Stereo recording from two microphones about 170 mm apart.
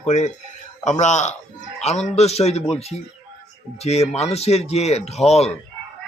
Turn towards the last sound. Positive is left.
turn(degrees=40)  # may be behind; listen again after turning